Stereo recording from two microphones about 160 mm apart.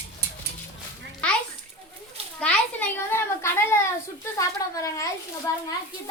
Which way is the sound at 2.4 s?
10° left (ahead or behind).